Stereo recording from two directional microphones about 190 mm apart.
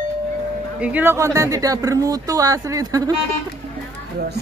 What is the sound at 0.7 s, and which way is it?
Speech, 5° right (ahead or behind).